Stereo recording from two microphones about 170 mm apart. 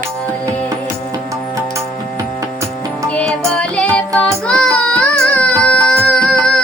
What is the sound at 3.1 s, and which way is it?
Music, 5° left (ahead or behind).